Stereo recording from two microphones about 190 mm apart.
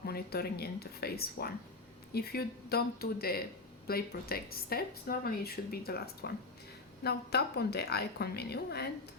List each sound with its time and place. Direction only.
0.0 s speech: 55° left (ahead or behind)